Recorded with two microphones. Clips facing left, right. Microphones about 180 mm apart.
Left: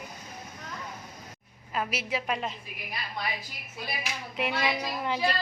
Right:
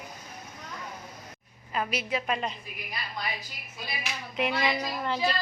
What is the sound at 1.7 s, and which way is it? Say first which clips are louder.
Speech: right 1 dB; 5° left (ahead or behind).